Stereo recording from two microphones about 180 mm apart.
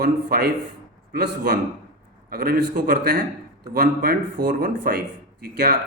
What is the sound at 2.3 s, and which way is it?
Speech, 55° right (ahead or behind).